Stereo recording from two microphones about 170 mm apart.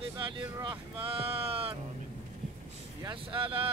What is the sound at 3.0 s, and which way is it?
Speech, 30° right (ahead or behind).